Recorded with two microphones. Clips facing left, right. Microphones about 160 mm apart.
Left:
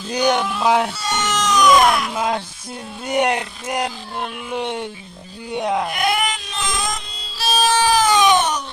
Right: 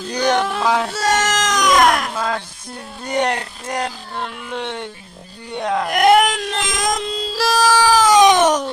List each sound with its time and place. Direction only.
0.1 s speech: 10° left (ahead or behind)
0.9 s baby cry: 90° right
2.1 s speech: 15° left (ahead or behind)
5.9 s music: 80° right